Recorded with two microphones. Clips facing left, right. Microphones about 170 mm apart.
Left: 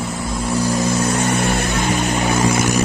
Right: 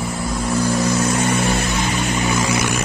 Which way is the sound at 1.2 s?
55° left (ahead or behind).